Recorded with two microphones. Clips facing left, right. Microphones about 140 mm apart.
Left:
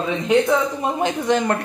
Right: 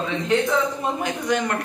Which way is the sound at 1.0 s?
30° left (ahead or behind).